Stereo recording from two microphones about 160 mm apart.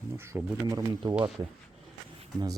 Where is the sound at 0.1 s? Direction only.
15° right (ahead or behind).